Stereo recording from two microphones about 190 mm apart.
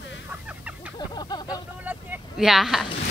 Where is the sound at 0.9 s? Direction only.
20° left (ahead or behind).